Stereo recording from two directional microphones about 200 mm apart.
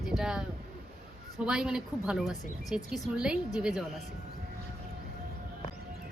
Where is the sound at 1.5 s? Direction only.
5° right (ahead or behind).